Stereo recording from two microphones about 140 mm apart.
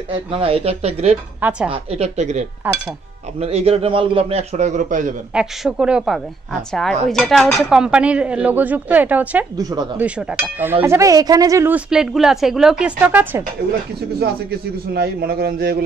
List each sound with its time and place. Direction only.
0.1 s a man's voice: 40° right (ahead or behind)
2.6 s speech: 10° right (ahead or behind)
3.3 s a man's voice: 45° right (ahead or behind); by 5.1 s 65° right (ahead or behind)
5.3 s speech: 5° right (ahead or behind)
9.6 s speech: 25° right (ahead or behind)
9.9 s speech: 10° right (ahead or behind)
11.7 s speech: 5° right (ahead or behind)
15.0 s a man's voice: 90° right